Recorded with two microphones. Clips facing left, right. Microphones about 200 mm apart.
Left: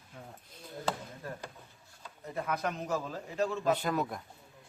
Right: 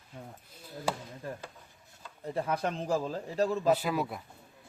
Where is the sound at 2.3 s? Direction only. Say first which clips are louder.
Right 3 dB; 30° right (ahead or behind).